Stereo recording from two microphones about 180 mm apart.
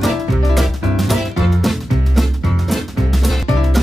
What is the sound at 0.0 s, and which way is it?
Music, centre (ahead or behind).